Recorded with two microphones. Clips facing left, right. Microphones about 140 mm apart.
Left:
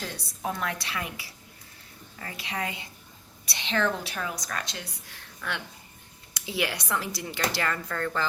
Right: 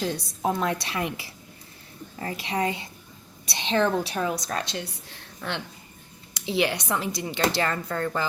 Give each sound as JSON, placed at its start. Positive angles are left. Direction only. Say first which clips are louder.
{"t": 0.6, "sound": "a woman's voice", "louder": "right 6 dB", "side_deg": -25}